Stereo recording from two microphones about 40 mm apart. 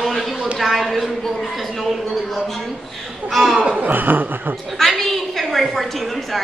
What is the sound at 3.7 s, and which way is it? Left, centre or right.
Chuckle, right.